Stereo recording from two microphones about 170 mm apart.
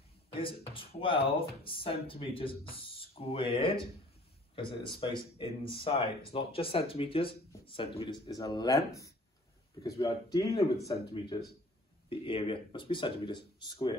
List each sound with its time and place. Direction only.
0.3 s speech: 30° left (ahead or behind)
12.1 s speech: 30° left (ahead or behind)